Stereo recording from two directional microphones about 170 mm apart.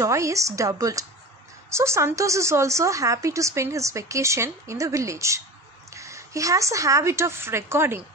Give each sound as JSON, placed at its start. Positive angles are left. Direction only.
{"t": 0.0, "sound": "a woman's voice", "side_deg": -20}